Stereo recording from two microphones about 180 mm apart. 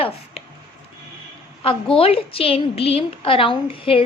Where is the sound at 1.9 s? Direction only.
30° left (ahead or behind).